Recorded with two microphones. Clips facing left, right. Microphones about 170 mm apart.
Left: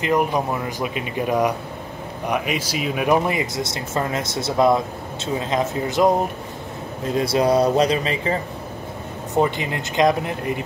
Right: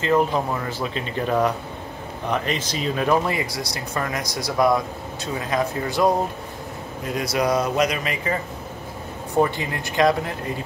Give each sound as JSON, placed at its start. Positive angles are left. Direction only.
{"t": 0.0, "sound": "speech", "side_deg": 15}